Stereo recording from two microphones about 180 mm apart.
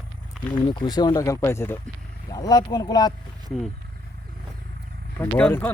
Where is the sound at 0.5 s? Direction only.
25° left (ahead or behind).